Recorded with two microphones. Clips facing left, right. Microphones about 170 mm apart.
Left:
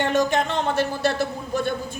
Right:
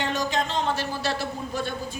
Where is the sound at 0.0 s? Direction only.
55° left (ahead or behind).